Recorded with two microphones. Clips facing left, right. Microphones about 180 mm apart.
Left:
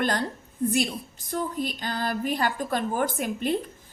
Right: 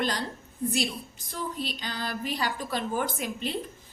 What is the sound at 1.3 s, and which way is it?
A woman's voice, 50° left (ahead or behind).